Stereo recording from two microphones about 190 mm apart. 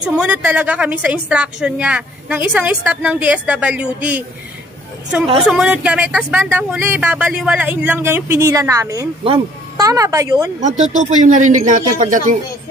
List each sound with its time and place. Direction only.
0.0 s speech: 5° right (ahead or behind)
5.4 s speech: centre (ahead or behind)
9.2 s a child's voice: 30° right (ahead or behind)
9.8 s speech: 20° right (ahead or behind)
10.6 s speech: 40° right (ahead or behind)